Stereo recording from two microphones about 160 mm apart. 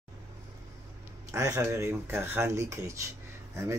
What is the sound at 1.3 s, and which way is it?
Speech, 20° right (ahead or behind).